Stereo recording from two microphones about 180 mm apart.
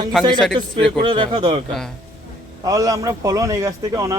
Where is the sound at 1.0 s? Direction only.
25° right (ahead or behind).